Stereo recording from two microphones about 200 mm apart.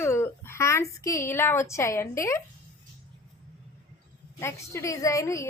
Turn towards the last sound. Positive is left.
turn(degrees=15)  # may be behind; listen again after turning